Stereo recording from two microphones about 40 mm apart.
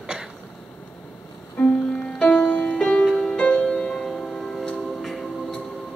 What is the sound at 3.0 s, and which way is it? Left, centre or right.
Music, centre.